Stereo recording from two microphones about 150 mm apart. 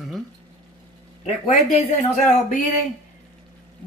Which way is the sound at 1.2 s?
45° left (ahead or behind).